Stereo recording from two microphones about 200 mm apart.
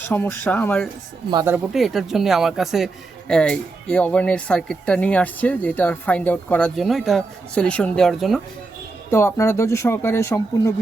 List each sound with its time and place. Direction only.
0.1 s speech: 10° left (ahead or behind)
1.3 s speech: 20° right (ahead or behind)
1.5 s speech: centre (ahead or behind)
9.0 s speech: 15° left (ahead or behind)